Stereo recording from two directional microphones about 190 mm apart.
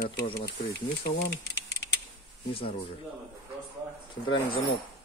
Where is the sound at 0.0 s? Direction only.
55° left (ahead or behind).